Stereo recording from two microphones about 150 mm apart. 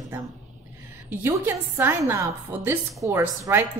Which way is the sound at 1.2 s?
15° right (ahead or behind).